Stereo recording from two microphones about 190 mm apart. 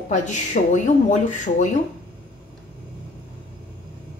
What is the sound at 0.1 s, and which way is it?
Speech, 40° left (ahead or behind).